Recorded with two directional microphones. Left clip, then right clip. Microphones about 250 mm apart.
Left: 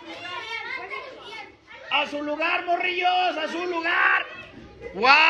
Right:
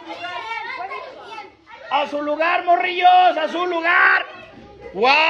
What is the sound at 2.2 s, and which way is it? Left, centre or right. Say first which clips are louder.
Speech: right 7 dB; right.